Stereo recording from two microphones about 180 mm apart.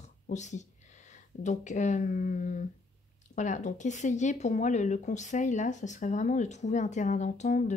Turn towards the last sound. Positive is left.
turn(degrees=40)  # may be behind; listen again after turning